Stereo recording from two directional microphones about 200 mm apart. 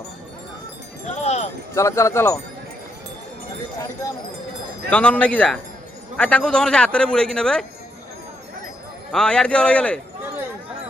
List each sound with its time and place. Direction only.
1.2 s wind chime: 35° left (ahead or behind)
1.7 s speech: 15° left (ahead or behind)
4.0 s speech: 15° left (ahead or behind)
9.1 s speech: 5° left (ahead or behind)